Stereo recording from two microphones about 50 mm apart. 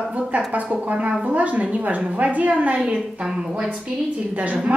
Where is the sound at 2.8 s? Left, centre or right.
Centre.